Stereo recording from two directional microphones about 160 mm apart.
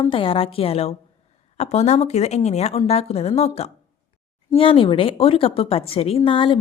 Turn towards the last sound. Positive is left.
turn(degrees=35)  # may be behind; listen again after turning